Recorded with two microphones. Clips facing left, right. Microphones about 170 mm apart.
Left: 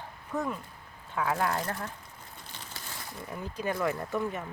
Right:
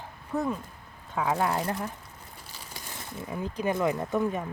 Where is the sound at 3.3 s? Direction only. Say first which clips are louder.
Right 4 dB; 20° right (ahead or behind).